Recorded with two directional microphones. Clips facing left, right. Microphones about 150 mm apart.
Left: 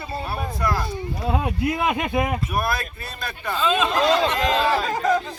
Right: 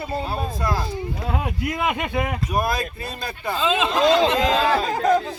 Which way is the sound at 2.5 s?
15° right (ahead or behind).